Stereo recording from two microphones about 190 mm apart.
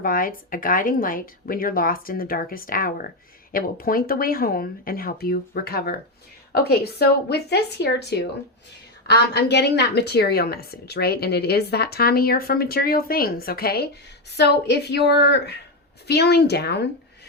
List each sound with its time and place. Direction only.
0.0 s a woman's voice: 50° left (ahead or behind)
9.3 s a woman's voice: 65° left (ahead or behind)